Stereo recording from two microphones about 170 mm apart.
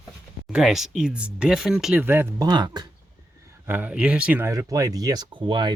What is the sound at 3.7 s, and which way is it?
Speech, 10° right (ahead or behind).